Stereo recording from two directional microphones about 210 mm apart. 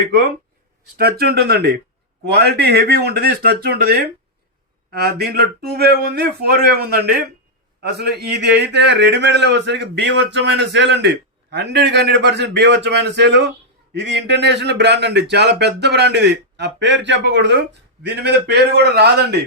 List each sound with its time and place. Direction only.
0.9 s a man's voice: 50° right (ahead or behind)